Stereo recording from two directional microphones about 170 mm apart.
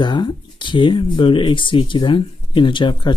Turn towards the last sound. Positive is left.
turn(degrees=30)  # may be behind; listen again after turning